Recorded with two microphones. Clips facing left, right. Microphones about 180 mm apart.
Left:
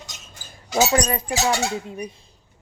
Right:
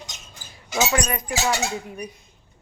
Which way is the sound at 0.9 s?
30° left (ahead or behind).